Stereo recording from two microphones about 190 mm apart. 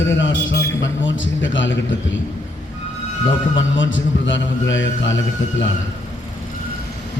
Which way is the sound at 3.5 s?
80° left.